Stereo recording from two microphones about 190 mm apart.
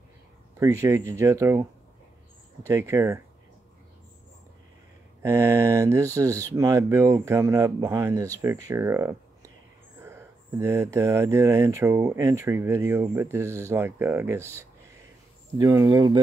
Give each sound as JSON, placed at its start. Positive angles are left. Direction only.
{"t": 0.6, "sound": "speech", "side_deg": -15}
{"t": 5.2, "sound": "speech", "side_deg": -15}